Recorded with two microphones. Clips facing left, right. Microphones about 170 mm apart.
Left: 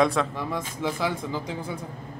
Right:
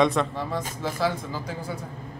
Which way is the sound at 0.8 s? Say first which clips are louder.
Even; 20° left (ahead or behind).